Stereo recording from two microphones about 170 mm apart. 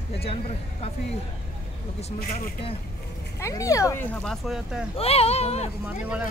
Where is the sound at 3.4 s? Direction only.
20° left (ahead or behind).